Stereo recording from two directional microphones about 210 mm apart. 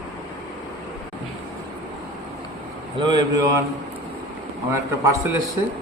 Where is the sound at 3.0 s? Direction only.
20° right (ahead or behind).